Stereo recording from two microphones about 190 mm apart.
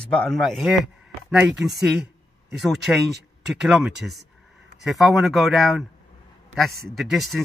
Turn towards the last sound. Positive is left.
turn(degrees=0)  # may be behind; listen again after turning